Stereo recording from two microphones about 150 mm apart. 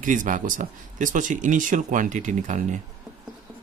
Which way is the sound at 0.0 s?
60° right (ahead or behind).